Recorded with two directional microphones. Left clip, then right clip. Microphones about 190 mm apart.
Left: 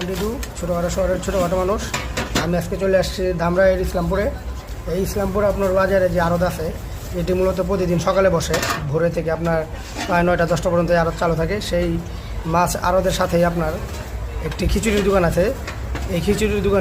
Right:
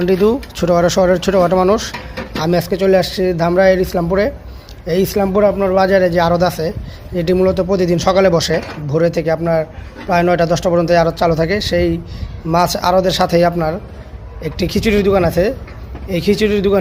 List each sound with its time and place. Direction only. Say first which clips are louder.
0.7 s speech: right 9 dB; 40° right (ahead or behind); by 16.7 s 25° right (ahead or behind)